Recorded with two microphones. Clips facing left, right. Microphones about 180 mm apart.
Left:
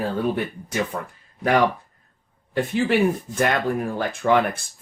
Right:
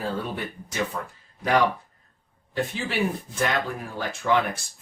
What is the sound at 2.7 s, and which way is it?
Speech, 55° left (ahead or behind).